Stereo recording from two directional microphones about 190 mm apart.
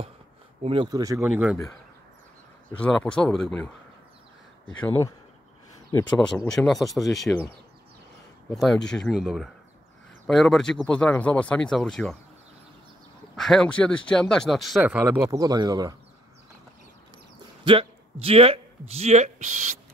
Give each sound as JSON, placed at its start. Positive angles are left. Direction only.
{"t": 0.6, "sound": "speech", "side_deg": -30}
{"t": 1.3, "sound": "speech", "side_deg": -5}
{"t": 2.8, "sound": "speech", "side_deg": 5}
{"t": 4.7, "sound": "speech", "side_deg": 10}
{"t": 8.5, "sound": "speech", "side_deg": 0}
{"t": 13.4, "sound": "speech", "side_deg": 5}
{"t": 17.6, "sound": "speech", "side_deg": -30}